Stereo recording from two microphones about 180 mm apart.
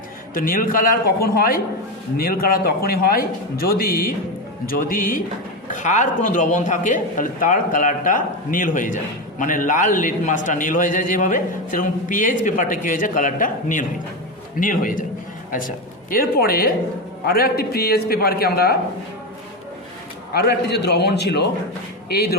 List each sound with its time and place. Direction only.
0.3 s a man's voice: 50° left (ahead or behind)
20.3 s a man's voice: 65° left (ahead or behind)